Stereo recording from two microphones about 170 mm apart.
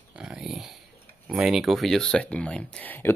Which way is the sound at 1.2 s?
5° right (ahead or behind).